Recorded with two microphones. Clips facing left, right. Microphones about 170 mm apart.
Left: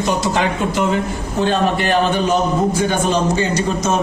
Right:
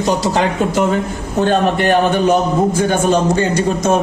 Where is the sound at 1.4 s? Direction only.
50° right (ahead or behind).